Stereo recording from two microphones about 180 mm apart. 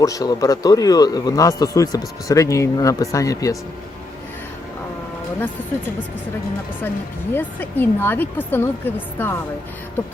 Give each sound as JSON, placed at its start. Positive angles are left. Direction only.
{"t": 0.0, "sound": "speech", "side_deg": 20}
{"t": 7.3, "sound": "speech", "side_deg": 10}